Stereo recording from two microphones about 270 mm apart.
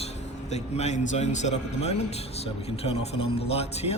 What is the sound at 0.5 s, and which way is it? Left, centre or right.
A man's voice, left.